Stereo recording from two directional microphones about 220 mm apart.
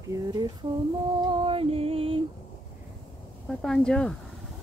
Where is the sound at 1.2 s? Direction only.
20° right (ahead or behind).